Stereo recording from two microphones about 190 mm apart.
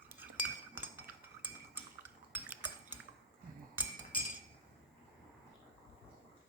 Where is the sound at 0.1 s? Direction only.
10° right (ahead or behind).